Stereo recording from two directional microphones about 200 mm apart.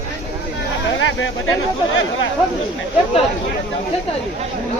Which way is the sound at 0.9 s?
75° left (ahead or behind).